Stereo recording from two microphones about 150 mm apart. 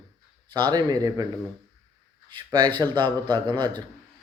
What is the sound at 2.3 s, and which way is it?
Speech, 30° right (ahead or behind).